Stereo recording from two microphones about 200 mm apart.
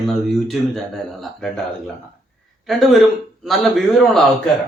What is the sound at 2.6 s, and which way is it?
A man's voice, centre (ahead or behind).